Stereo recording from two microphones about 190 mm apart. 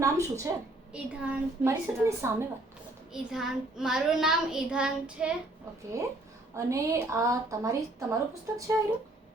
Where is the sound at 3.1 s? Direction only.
Centre (ahead or behind).